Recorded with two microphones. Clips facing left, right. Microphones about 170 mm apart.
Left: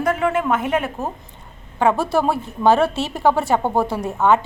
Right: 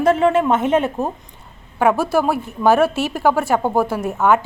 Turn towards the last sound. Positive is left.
turn(degrees=0)  # may be behind; listen again after turning